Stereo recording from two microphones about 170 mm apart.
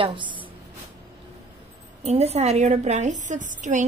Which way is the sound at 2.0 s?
40° right (ahead or behind).